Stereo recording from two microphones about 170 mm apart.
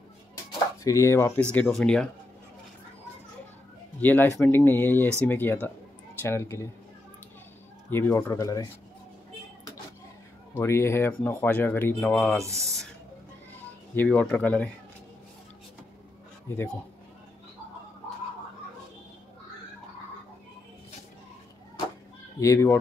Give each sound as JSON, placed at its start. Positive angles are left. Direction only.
{"t": 0.8, "sound": "speech", "side_deg": 15}
{"t": 4.0, "sound": "speech", "side_deg": 10}
{"t": 7.9, "sound": "speech", "side_deg": 15}
{"t": 10.5, "sound": "speech", "side_deg": 15}
{"t": 12.4, "sound": "speech", "side_deg": -15}
{"t": 13.9, "sound": "speech", "side_deg": 10}
{"t": 22.4, "sound": "speech", "side_deg": 15}